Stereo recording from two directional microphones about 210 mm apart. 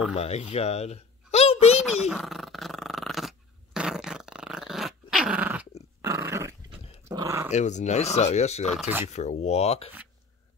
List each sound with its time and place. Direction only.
0.1 s a child's voice: 30° left (ahead or behind)
1.8 s dog: centre (ahead or behind)
7.5 s speech: 35° left (ahead or behind)